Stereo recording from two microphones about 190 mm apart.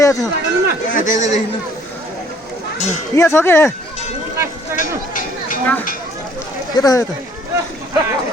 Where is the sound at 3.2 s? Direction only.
15° left (ahead or behind).